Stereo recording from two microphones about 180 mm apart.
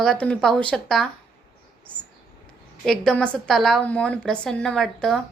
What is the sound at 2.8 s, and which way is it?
A woman's voice, centre (ahead or behind).